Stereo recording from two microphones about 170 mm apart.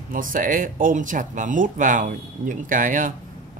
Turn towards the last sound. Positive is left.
turn(degrees=-50)  # may be behind; listen again after turning